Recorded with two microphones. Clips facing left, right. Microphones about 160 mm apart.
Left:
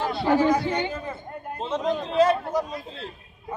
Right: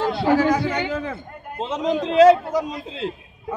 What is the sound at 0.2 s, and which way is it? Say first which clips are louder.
A man's voice: right 1 dB; 85° right.